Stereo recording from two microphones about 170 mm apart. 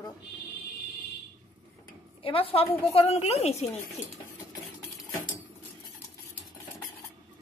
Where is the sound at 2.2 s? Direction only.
35° left (ahead or behind).